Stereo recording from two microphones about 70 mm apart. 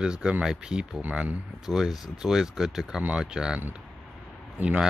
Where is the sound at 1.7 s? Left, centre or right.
Centre.